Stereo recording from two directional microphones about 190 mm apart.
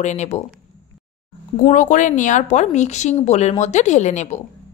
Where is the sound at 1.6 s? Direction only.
40° left (ahead or behind).